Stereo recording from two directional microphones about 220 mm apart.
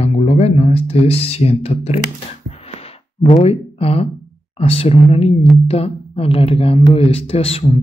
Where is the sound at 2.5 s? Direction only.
30° left (ahead or behind).